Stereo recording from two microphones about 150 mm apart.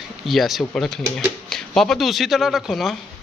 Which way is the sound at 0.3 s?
Centre (ahead or behind).